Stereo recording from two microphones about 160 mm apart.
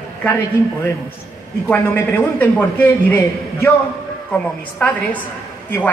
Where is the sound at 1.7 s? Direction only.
10° left (ahead or behind).